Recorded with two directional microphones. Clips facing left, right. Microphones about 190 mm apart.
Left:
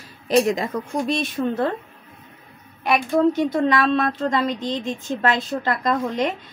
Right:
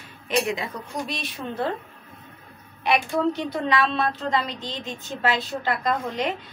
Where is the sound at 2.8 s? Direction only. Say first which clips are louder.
Left 4 dB; 45° left (ahead or behind).